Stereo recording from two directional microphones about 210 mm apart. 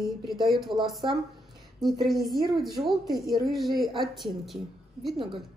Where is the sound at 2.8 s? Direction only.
Centre (ahead or behind).